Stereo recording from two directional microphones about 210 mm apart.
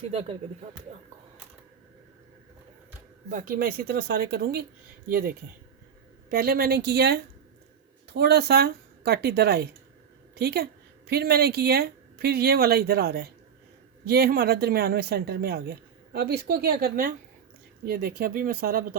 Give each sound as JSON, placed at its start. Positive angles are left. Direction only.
{"t": 0.1, "sound": "speech", "side_deg": -30}
{"t": 3.2, "sound": "speech", "side_deg": -40}